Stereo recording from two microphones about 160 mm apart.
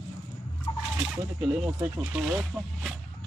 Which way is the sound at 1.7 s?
5° right (ahead or behind).